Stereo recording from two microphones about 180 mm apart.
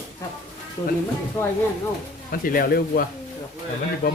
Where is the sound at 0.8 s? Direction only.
20° left (ahead or behind).